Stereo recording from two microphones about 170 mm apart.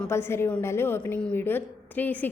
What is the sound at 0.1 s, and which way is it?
A woman's voice, 15° left (ahead or behind).